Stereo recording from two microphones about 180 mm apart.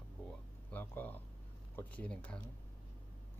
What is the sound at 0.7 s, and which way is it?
Speech, 10° left (ahead or behind).